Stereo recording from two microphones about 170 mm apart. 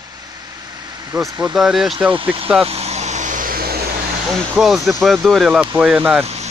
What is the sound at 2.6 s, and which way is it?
Vehicle, 40° right (ahead or behind).